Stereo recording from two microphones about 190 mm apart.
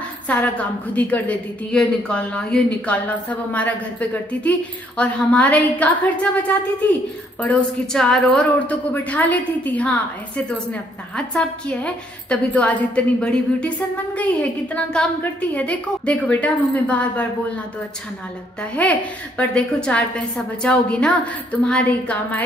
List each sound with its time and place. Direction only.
0.3 s a woman's voice: 5° left (ahead or behind)
18.6 s a woman's voice: 5° left (ahead or behind)